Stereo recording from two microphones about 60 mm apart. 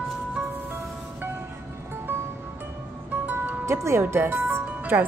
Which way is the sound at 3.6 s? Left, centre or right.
Right.